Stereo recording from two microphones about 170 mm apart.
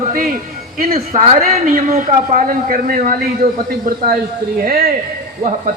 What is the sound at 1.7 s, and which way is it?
Speech, 50° right (ahead or behind).